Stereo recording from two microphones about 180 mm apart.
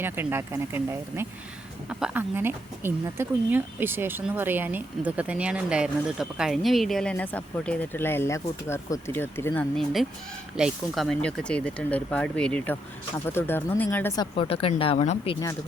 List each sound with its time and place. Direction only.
0.0 s speech: 10° right (ahead or behind); by 9.6 s 15° left (ahead or behind)
9.7 s speech: centre (ahead or behind)
14.2 s speech: 30° left (ahead or behind)